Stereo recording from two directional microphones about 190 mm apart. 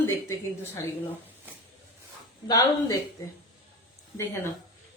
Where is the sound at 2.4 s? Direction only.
20° left (ahead or behind).